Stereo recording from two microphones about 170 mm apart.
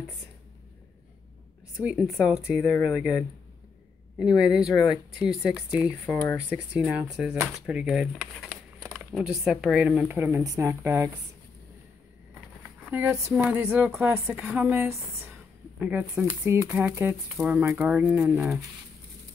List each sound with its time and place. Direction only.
1.8 s speech: 5° right (ahead or behind)
12.9 s speech: 15° right (ahead or behind)